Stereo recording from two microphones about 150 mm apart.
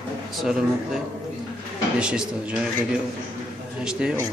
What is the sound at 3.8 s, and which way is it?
Speech, 5° right (ahead or behind).